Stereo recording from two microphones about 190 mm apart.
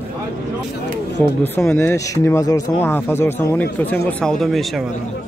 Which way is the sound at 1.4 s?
10° left (ahead or behind).